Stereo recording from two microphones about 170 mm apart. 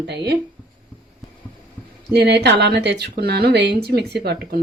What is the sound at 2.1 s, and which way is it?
Speech, 75° right (ahead or behind).